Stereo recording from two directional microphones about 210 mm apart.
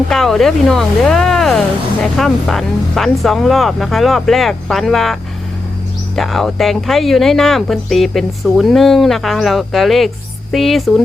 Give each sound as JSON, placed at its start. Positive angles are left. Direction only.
{"t": 0.1, "sound": "speech", "side_deg": 0}
{"t": 6.1, "sound": "speech", "side_deg": 0}